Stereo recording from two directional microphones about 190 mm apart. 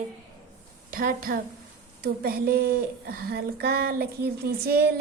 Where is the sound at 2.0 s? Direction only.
55° right (ahead or behind).